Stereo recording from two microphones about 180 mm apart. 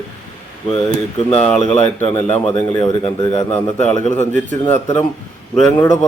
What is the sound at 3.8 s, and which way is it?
Speech, 40° left (ahead or behind).